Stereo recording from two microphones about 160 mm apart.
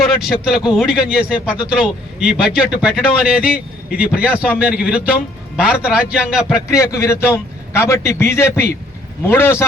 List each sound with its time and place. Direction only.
0.4 s a man's voice: 5° right (ahead or behind)
6.7 s a man's voice: 20° left (ahead or behind)